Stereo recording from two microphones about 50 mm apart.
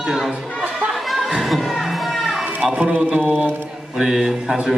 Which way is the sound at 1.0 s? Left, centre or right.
Centre.